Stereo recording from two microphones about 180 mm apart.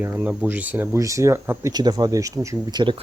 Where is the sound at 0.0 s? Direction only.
10° right (ahead or behind).